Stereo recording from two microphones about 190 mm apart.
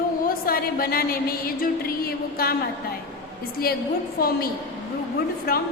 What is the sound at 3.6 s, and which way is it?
A woman's voice, 50° left (ahead or behind).